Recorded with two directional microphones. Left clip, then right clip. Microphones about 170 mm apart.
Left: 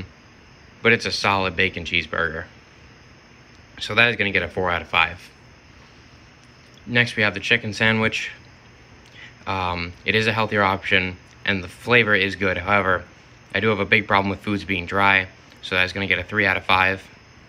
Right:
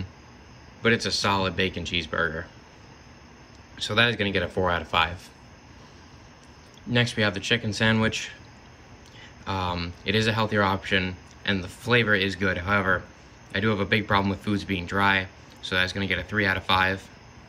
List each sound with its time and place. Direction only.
0.8 s speech: centre (ahead or behind)
2.0 s speech: 25° left (ahead or behind)
3.7 s speech: 5° right (ahead or behind)
6.9 s speech: 5° right (ahead or behind)
9.4 s speech: 5° right (ahead or behind)